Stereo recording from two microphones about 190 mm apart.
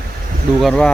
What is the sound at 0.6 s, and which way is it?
Speech, 5° left (ahead or behind).